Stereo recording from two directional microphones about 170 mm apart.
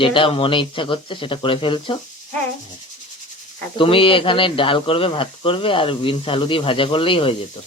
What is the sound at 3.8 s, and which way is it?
Speech, 30° left (ahead or behind).